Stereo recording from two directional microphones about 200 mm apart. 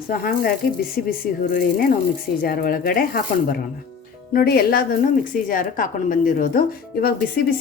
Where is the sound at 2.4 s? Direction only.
45° left (ahead or behind).